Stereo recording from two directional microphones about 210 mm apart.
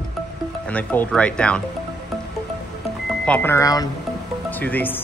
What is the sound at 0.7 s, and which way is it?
Speech, 5° left (ahead or behind).